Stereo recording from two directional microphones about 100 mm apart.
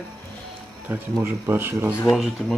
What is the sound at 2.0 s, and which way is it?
Speech, centre (ahead or behind).